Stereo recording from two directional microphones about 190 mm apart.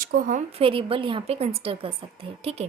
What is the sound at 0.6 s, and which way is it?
A woman's voice, 30° right (ahead or behind).